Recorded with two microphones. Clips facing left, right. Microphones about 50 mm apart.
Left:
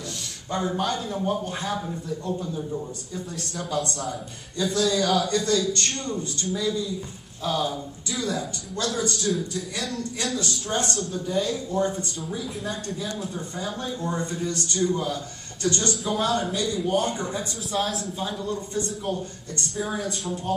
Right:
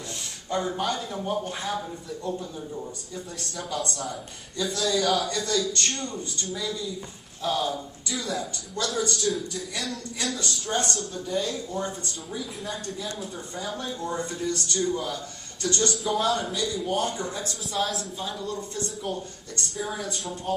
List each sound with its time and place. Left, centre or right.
0.6 s a man's voice: centre
14.2 s a man's voice: centre
15.6 s a man's voice: left
15.9 s a man's voice: centre
17.1 s a man's voice: left
17.7 s a man's voice: centre